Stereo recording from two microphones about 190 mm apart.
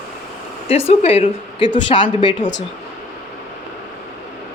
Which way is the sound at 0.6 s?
30° left (ahead or behind).